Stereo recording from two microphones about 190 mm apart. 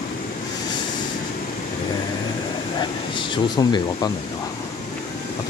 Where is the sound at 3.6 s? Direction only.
20° left (ahead or behind).